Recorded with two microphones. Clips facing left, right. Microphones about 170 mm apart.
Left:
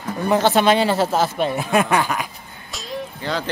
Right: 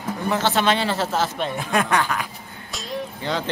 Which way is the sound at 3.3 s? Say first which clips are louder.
Left 1 dB; 20° right (ahead or behind).